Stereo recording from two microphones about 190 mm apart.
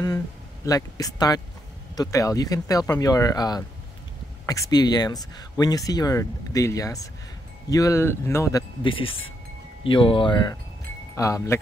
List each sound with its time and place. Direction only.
0.7 s speech: 20° left (ahead or behind)